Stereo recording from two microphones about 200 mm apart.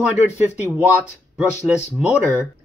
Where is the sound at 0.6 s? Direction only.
10° right (ahead or behind).